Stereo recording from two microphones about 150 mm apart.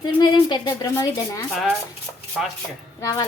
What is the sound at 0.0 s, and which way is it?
A woman's voice, 30° left (ahead or behind).